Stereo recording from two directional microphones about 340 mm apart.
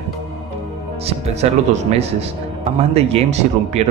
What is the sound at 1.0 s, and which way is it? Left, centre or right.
A man's voice, centre.